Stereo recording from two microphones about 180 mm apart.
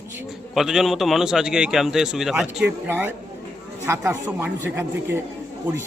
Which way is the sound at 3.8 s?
15° right (ahead or behind).